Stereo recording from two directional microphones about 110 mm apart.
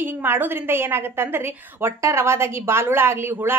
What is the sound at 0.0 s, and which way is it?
A woman's voice, 20° right (ahead or behind).